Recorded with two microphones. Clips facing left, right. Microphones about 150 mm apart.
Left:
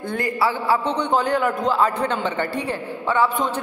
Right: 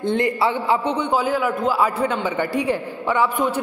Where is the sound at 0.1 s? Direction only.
20° right (ahead or behind).